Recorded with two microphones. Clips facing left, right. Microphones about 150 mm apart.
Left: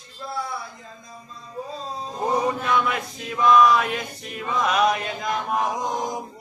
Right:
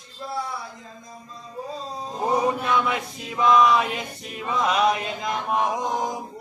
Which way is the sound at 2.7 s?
20° right (ahead or behind).